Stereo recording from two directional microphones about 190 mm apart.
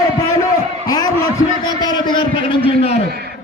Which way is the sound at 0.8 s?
20° left (ahead or behind).